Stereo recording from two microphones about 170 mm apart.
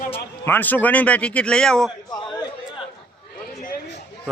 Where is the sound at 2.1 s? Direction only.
20° left (ahead or behind).